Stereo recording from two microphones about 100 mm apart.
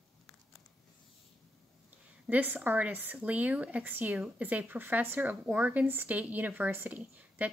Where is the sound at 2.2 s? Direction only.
15° right (ahead or behind).